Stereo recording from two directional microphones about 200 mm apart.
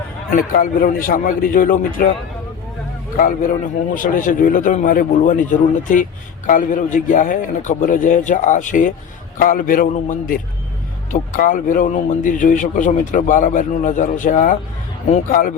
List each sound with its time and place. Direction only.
0.3 s a man's voice: 45° left (ahead or behind)
3.2 s a man's voice: 45° left (ahead or behind)